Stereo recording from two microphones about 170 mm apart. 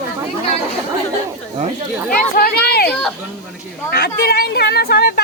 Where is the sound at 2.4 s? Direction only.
70° left (ahead or behind).